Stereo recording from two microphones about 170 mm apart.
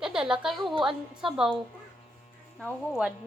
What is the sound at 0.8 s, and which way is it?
Speech, 5° right (ahead or behind).